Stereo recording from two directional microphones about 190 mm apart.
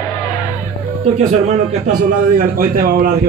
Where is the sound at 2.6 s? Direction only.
50° right (ahead or behind).